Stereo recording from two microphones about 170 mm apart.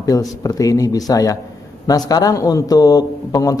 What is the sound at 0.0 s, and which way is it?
A man's voice, 20° left (ahead or behind).